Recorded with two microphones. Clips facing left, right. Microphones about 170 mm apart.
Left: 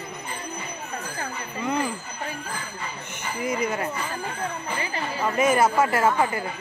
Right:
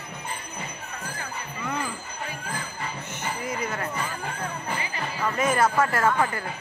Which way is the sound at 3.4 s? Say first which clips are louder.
Left 7 dB; 15° left (ahead or behind).